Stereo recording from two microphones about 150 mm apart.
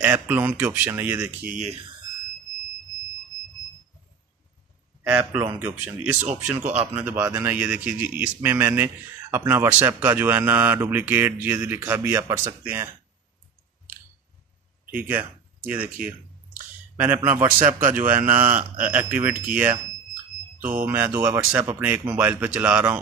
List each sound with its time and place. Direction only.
0.0 s speech: 10° right (ahead or behind)
1.5 s speech: 50° right (ahead or behind)
5.1 s speech: 15° right (ahead or behind)
14.9 s speech: 10° right (ahead or behind)
20.8 s speech: 10° right (ahead or behind)